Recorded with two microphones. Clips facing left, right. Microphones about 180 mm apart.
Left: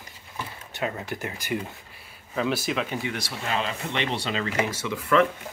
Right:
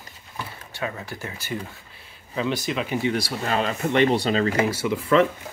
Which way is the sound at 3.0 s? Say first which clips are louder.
Right 7 dB; 35° right (ahead or behind).